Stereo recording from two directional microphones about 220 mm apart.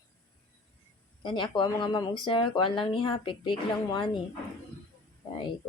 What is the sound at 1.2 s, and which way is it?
A woman's voice, 20° left (ahead or behind).